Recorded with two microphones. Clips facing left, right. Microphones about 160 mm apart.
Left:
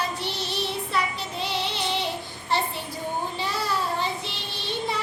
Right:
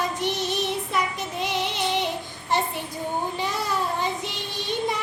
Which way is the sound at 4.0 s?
15° right (ahead or behind).